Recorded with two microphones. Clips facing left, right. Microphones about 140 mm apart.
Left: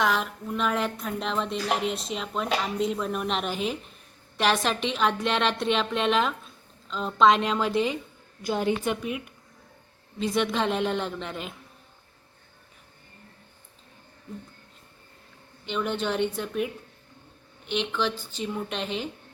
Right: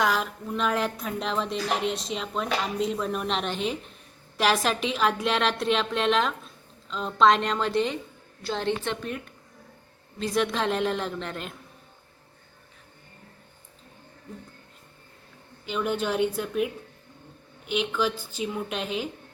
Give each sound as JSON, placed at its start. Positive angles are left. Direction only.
{"t": 0.0, "sound": "a woman's voice", "side_deg": 0}
{"t": 15.6, "sound": "a woman's voice", "side_deg": -5}